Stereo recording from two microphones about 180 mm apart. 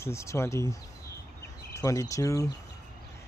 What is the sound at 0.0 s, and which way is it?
Speech, 15° left (ahead or behind).